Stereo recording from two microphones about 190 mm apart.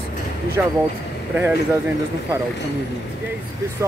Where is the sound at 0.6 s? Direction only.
10° right (ahead or behind).